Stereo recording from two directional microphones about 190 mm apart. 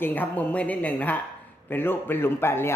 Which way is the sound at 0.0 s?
10° left (ahead or behind).